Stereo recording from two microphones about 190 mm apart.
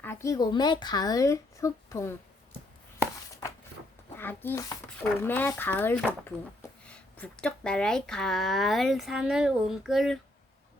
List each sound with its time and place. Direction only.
0.0 s speech: 15° left (ahead or behind)
4.2 s speech: 10° left (ahead or behind)